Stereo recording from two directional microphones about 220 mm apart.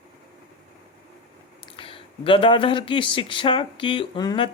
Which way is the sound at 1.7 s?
25° left (ahead or behind).